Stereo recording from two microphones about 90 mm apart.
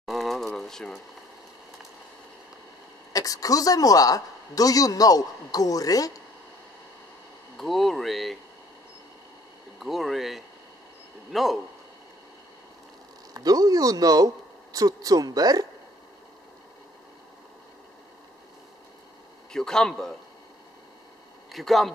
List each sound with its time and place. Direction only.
0.0 s a sound: centre (ahead or behind)
3.1 s speech: 40° left (ahead or behind)
7.5 s speech: centre (ahead or behind)
9.8 s speech: centre (ahead or behind)
13.3 s speech: 45° right (ahead or behind)
19.5 s speech: 5° left (ahead or behind)
21.5 s speech: centre (ahead or behind)